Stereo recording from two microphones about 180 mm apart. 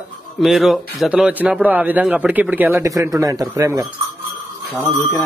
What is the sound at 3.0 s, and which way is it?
Speech, 20° right (ahead or behind).